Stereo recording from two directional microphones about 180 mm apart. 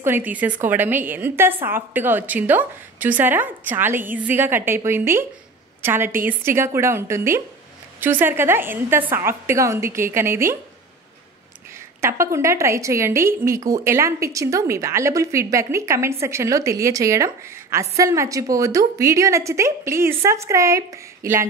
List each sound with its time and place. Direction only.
0.0 s a woman's voice: 10° right (ahead or behind)
12.0 s a woman's voice: 15° right (ahead or behind)